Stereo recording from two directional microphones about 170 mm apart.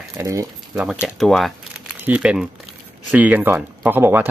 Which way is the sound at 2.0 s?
5° right (ahead or behind).